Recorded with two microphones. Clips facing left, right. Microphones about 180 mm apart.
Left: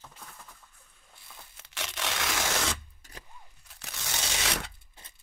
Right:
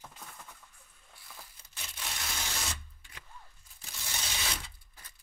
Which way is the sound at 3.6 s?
75° left (ahead or behind).